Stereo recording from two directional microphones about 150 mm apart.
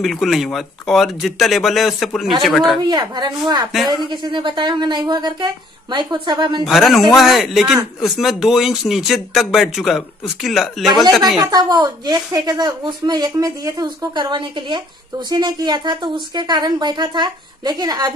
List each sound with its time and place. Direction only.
0.0 s a man's voice: centre (ahead or behind)
2.8 s a woman's voice: 30° right (ahead or behind)
3.7 s a man's voice: centre (ahead or behind)
4.1 s speech: 30° right (ahead or behind)
6.6 s a man's voice: centre (ahead or behind)
11.4 s a woman's voice: 25° right (ahead or behind)